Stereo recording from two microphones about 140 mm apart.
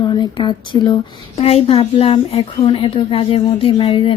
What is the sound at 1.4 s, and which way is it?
A woman's voice, 45° left (ahead or behind).